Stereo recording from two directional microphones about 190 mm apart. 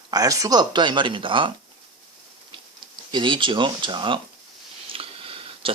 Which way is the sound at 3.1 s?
25° right (ahead or behind).